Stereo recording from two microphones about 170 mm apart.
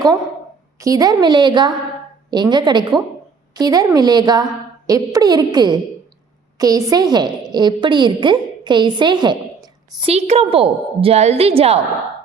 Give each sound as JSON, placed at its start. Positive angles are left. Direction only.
{"t": 0.8, "sound": "a woman's voice", "side_deg": -20}
{"t": 10.0, "sound": "a woman's voice", "side_deg": -40}